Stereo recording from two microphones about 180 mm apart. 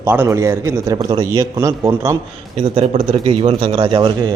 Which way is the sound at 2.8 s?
35° right (ahead or behind).